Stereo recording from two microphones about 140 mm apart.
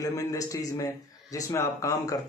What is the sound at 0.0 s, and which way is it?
A man's voice, 25° left (ahead or behind).